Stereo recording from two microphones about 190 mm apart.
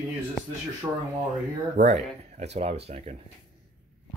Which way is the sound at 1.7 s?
40° right (ahead or behind).